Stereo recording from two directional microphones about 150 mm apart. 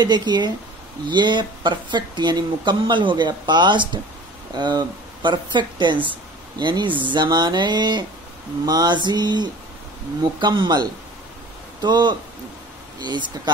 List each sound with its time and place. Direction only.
0.0 s speech: 30° right (ahead or behind)